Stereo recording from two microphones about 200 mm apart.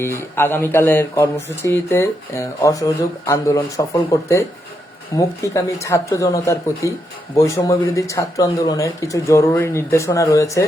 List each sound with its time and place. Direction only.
0.0 s speech: 15° left (ahead or behind)